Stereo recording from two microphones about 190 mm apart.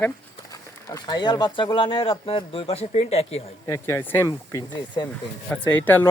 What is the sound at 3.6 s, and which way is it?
Speech, 15° left (ahead or behind).